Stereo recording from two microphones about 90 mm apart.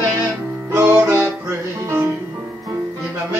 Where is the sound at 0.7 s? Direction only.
20° right (ahead or behind).